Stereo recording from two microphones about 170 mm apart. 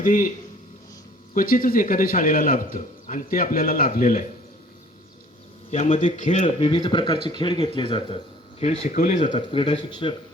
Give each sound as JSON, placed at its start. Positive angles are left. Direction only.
{"t": 0.0, "sound": "speech", "side_deg": 55}
{"t": 1.3, "sound": "a man's voice", "side_deg": 55}
{"t": 5.7, "sound": "a man's voice", "side_deg": 40}
{"t": 9.2, "sound": "speech", "side_deg": 30}